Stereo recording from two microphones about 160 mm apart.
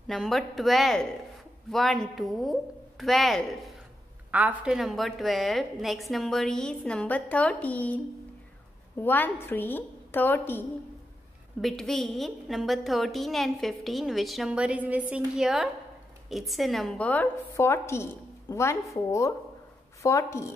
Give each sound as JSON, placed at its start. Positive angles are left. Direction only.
{"t": 0.0, "sound": "a woman's voice", "side_deg": 0}
{"t": 4.3, "sound": "a woman's voice", "side_deg": -10}
{"t": 11.6, "sound": "a woman's voice", "side_deg": 0}
{"t": 20.0, "sound": "a woman's voice", "side_deg": 20}